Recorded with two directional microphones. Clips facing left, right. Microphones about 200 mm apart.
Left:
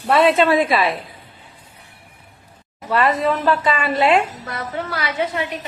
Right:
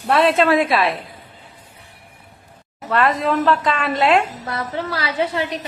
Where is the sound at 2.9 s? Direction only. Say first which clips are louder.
Even; centre (ahead or behind).